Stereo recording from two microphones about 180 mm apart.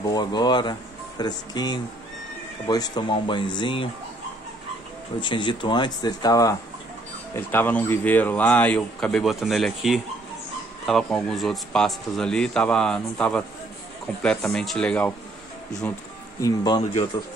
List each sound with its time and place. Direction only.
0.0 s speech: 25° left (ahead or behind)
5.2 s a man's voice: 25° left (ahead or behind); by 15.1 s 5° left (ahead or behind)
16.3 s speech: 20° left (ahead or behind)